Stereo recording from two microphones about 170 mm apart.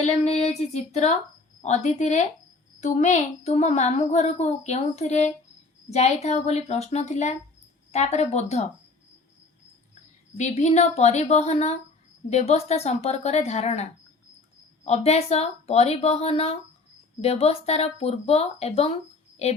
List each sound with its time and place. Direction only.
0.0 s a woman's voice: 40° left (ahead or behind)
10.3 s a woman's voice: 40° left (ahead or behind)
14.8 s a woman's voice: 40° left (ahead or behind)